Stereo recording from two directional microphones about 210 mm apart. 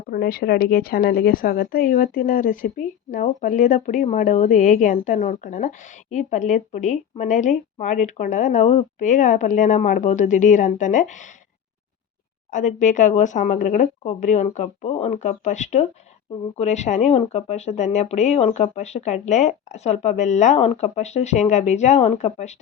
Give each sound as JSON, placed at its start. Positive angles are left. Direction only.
{"t": 0.1, "sound": "a woman's voice", "side_deg": 45}
{"t": 12.5, "sound": "a woman's voice", "side_deg": 35}